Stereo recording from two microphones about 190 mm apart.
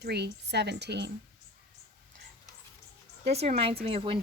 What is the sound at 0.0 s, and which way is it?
A woman's voice, 60° right (ahead or behind).